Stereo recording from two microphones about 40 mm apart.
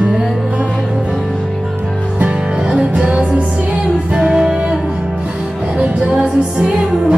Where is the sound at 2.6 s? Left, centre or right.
Right.